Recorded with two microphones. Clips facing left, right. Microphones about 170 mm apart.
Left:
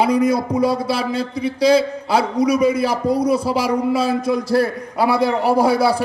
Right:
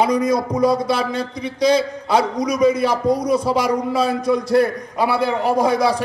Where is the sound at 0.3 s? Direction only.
5° left (ahead or behind).